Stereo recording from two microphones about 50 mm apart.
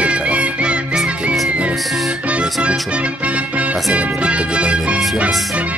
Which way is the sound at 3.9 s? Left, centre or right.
Right.